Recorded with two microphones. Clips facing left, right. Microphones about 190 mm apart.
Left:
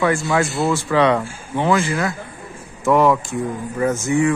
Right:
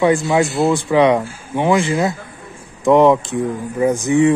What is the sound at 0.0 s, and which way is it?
Speech, 20° right (ahead or behind).